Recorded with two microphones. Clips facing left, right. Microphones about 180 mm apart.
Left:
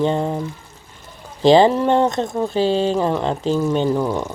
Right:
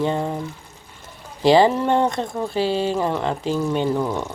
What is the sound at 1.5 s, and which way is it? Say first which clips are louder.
Speech: left 2 dB; 20° left (ahead or behind).